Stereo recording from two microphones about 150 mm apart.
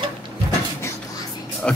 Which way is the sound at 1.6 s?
5° left (ahead or behind).